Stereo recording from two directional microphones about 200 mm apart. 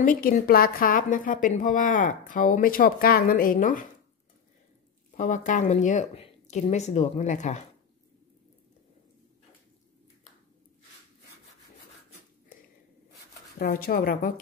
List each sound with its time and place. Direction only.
0.0 s speech: 45° left (ahead or behind)
5.1 s speech: 40° left (ahead or behind)
13.6 s speech: 45° left (ahead or behind)